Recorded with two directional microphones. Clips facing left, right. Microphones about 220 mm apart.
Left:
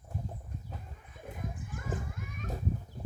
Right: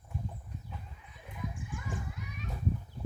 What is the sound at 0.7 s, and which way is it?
Children playing, 50° left (ahead or behind).